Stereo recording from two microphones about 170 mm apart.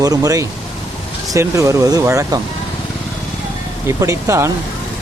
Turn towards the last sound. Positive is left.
turn(degrees=-15)  # may be behind; listen again after turning